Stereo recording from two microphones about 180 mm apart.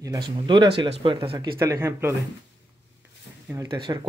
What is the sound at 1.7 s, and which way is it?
Speech, 15° right (ahead or behind).